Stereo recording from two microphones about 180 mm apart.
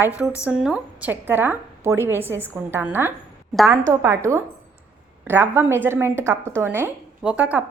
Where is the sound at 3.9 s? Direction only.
15° right (ahead or behind).